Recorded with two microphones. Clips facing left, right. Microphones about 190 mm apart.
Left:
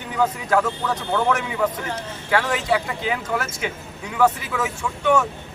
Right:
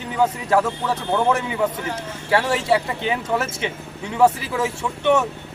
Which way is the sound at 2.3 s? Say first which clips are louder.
Right 2 dB; 25° right (ahead or behind).